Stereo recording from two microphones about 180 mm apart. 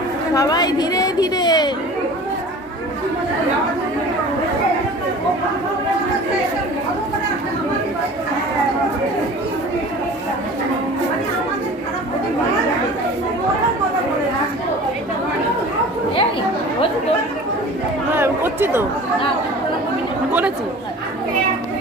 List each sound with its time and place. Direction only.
0.3 s a woman's voice: 20° left (ahead or behind)
18.2 s speech: 10° right (ahead or behind)